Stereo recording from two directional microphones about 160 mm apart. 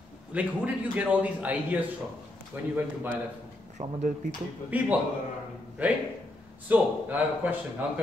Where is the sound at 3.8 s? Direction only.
45° right (ahead or behind).